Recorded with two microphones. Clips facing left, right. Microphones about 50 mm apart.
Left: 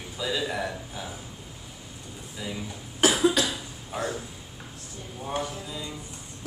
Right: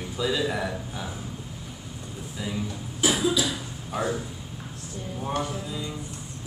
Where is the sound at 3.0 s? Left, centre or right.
Left.